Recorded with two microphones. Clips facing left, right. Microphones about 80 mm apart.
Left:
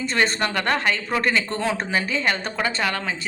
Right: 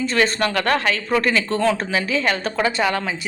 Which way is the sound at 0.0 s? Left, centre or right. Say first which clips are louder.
Right 3 dB; centre.